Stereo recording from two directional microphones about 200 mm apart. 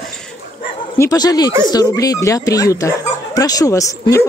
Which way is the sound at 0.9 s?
15° left (ahead or behind).